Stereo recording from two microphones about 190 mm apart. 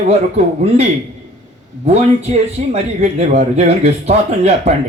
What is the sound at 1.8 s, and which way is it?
A man's voice, 35° right (ahead or behind).